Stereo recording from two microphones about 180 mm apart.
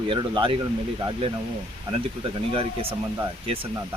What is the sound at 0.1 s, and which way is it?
Speech, 25° right (ahead or behind).